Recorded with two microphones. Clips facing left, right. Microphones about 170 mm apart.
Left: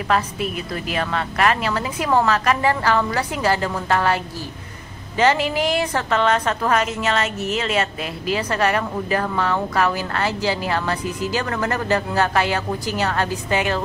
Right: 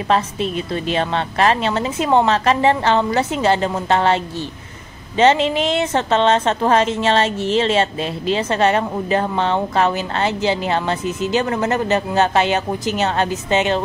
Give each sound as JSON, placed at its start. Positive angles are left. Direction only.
{"t": 0.1, "sound": "a woman's voice", "side_deg": -25}